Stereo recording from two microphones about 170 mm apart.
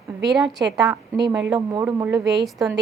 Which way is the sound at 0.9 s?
20° right (ahead or behind).